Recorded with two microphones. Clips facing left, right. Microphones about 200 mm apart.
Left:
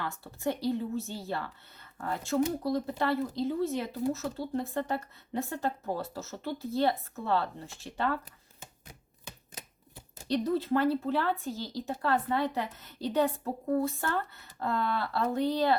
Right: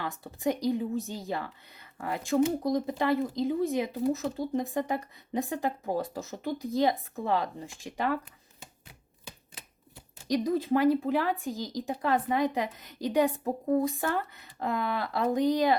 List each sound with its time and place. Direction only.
0.0 s speech: 15° right (ahead or behind)
10.2 s speech: 10° right (ahead or behind)